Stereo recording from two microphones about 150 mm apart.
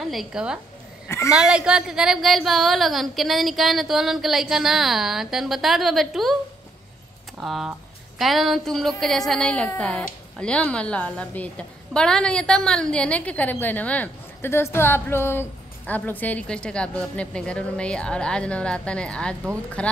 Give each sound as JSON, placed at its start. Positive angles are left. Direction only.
{"t": 0.0, "sound": "a woman's voice", "side_deg": 0}
{"t": 1.0, "sound": "a woman's voice", "side_deg": 20}
{"t": 1.3, "sound": "a woman's voice", "side_deg": -5}
{"t": 7.3, "sound": "a woman's voice", "side_deg": 0}